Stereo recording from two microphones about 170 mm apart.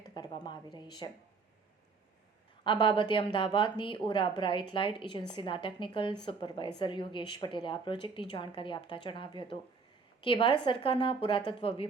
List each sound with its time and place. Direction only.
0.1 s a woman's voice: 25° left (ahead or behind)
2.6 s a woman's voice: 30° left (ahead or behind)